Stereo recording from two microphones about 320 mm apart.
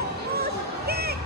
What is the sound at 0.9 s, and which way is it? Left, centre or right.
Music, right.